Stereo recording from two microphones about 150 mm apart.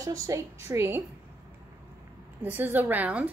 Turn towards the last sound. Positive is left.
turn(degrees=-10)  # may be behind; listen again after turning